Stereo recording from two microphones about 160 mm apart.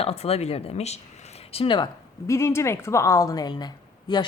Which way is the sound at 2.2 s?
15° left (ahead or behind).